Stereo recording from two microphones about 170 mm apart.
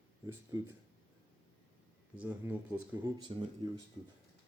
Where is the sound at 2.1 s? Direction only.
10° right (ahead or behind).